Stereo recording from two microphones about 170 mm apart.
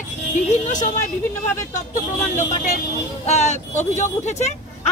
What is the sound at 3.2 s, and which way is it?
Speech, 40° left (ahead or behind).